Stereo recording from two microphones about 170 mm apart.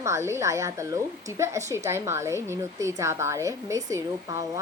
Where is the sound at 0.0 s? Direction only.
15° right (ahead or behind).